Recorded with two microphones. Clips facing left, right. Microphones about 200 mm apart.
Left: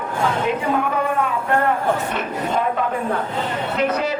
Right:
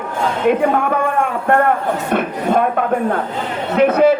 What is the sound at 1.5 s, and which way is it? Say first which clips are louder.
A man's voice: right 5 dB; 55° right (ahead or behind).